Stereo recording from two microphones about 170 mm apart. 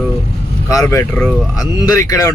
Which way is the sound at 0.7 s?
20° left (ahead or behind).